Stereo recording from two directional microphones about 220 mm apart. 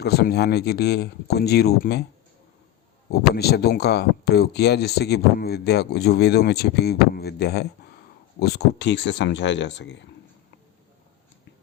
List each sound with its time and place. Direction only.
0.0 s speech: 45° left (ahead or behind)
3.1 s speech: 45° left (ahead or behind)